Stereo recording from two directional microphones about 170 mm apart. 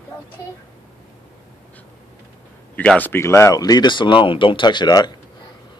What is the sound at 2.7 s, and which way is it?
Speech, 10° left (ahead or behind).